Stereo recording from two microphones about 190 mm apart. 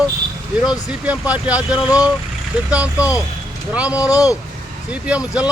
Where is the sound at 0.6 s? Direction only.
5° right (ahead or behind).